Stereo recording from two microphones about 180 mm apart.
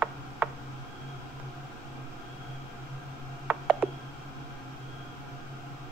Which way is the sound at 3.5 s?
5° right (ahead or behind).